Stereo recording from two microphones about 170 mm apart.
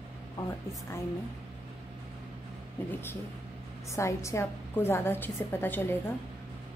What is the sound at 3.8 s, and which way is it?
A woman's voice, 15° left (ahead or behind).